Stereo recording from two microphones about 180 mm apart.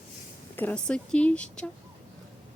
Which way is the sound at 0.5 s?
10° left (ahead or behind).